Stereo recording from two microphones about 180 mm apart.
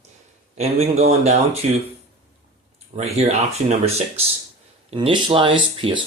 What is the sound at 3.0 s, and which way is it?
Speech, 35° right (ahead or behind).